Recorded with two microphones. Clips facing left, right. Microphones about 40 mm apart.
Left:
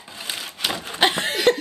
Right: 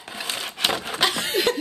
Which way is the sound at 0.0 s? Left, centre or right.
Right.